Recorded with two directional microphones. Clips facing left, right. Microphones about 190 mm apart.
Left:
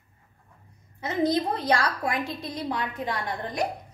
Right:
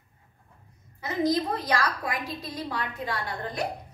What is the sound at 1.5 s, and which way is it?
Speech, 30° left (ahead or behind).